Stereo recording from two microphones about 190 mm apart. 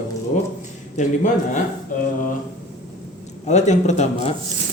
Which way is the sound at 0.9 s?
40° left (ahead or behind).